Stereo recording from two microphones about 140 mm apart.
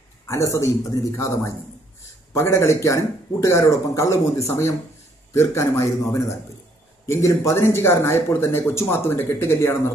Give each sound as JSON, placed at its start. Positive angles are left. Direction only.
{"t": 0.3, "sound": "speech", "side_deg": 20}